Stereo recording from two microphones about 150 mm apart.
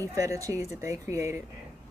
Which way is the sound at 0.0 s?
20° right (ahead or behind).